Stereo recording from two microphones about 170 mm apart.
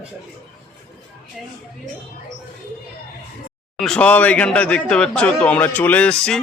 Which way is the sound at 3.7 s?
5° left (ahead or behind).